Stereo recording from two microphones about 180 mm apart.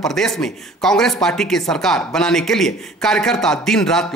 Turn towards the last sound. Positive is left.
turn(degrees=5)  # may be behind; listen again after turning